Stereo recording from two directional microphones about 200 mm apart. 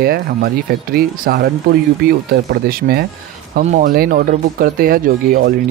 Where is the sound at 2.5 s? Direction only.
50° right (ahead or behind).